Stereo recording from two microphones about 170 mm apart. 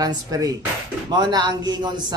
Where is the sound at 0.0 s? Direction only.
20° right (ahead or behind).